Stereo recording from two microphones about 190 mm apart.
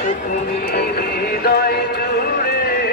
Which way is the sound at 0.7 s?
55° left (ahead or behind).